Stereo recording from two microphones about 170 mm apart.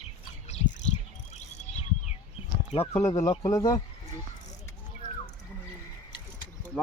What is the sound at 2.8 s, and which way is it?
Speech, 15° left (ahead or behind).